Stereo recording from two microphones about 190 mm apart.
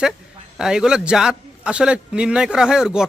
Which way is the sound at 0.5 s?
5° right (ahead or behind).